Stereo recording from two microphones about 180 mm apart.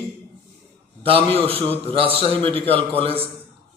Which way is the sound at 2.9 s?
30° right (ahead or behind).